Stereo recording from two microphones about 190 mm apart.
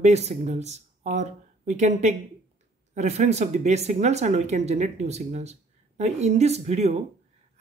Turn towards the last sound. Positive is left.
turn(degrees=-35)  # may be behind; listen again after turning